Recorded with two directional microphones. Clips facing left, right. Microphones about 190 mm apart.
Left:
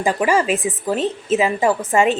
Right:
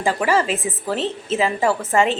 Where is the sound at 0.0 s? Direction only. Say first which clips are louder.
Left 2 dB; 15° left (ahead or behind).